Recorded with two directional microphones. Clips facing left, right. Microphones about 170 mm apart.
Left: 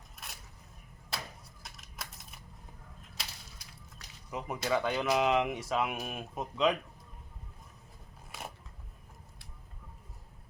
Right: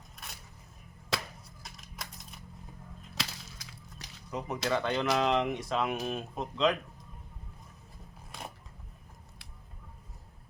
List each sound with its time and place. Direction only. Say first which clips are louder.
1.1 s chop: right 5 dB; 90° right
1.6 s a sound: right 1 dB; centre (ahead or behind)
3.2 s whip: right 8 dB; 90° right
4.3 s speech: right 1 dB; 10° left (ahead or behind)